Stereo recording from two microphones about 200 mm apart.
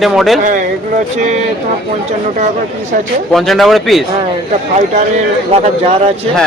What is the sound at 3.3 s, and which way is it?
Speech, centre (ahead or behind).